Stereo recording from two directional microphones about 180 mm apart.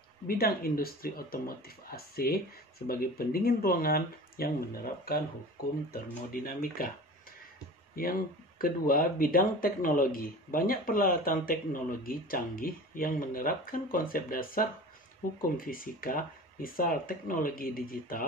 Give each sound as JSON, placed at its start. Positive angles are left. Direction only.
{"t": 0.3, "sound": "speech", "side_deg": 55}
{"t": 6.3, "sound": "speech", "side_deg": 55}
{"t": 7.9, "sound": "speech", "side_deg": 55}